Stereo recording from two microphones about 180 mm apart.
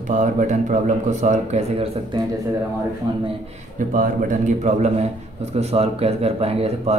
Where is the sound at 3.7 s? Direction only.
50° right (ahead or behind).